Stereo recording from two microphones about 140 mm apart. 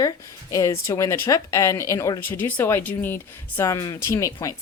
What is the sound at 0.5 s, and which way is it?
Speech, 20° left (ahead or behind).